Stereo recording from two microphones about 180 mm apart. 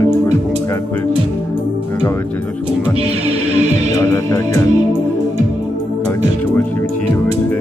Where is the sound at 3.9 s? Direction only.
15° left (ahead or behind).